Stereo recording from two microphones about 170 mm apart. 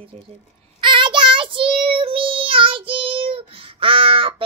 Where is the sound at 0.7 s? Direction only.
30° right (ahead or behind).